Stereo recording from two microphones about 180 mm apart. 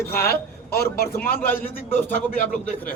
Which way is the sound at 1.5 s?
10° left (ahead or behind).